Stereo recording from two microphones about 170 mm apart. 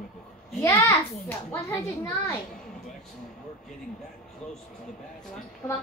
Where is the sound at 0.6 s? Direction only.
20° left (ahead or behind).